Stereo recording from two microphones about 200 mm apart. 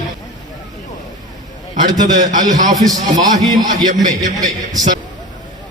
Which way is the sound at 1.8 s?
20° right (ahead or behind).